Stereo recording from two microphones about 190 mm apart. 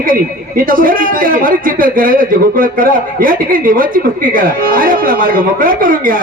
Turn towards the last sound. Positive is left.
turn(degrees=-45)  # may be behind; listen again after turning